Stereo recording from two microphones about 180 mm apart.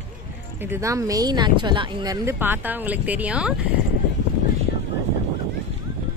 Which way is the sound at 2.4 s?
10° right (ahead or behind).